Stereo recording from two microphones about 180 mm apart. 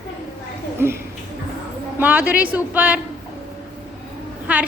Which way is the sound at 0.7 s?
15° right (ahead or behind).